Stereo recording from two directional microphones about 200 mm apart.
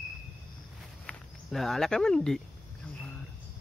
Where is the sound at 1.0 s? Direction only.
Centre (ahead or behind).